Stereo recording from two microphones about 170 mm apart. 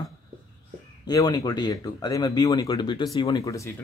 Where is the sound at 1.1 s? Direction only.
25° left (ahead or behind).